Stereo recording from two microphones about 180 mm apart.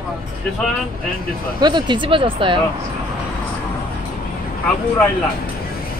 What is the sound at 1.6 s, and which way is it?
Speech, 25° right (ahead or behind).